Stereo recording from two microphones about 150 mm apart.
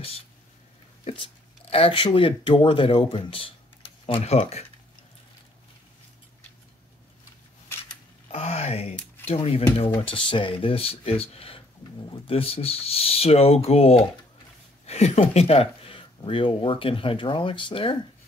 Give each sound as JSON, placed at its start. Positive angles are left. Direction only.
{"t": 1.0, "sound": "speech", "side_deg": 35}
{"t": 8.3, "sound": "speech", "side_deg": 45}